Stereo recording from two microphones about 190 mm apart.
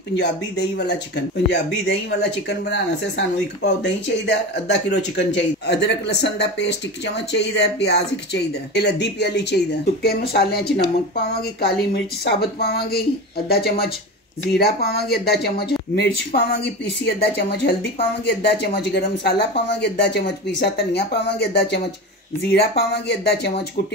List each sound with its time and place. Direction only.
0.2 s speech: 60° left (ahead or behind)
22.5 s speech: 55° left (ahead or behind)